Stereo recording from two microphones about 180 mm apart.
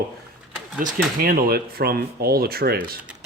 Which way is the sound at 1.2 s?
55° right (ahead or behind).